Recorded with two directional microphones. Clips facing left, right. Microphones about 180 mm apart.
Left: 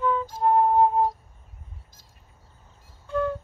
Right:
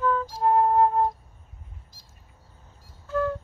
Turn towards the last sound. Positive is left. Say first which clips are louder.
# even
turn(degrees=0)  # may be behind; listen again after turning